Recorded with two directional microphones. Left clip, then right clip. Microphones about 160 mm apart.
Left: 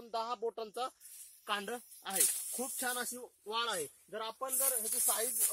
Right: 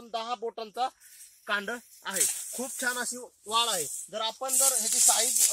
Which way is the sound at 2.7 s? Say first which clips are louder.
Right 8 dB; 40° left (ahead or behind).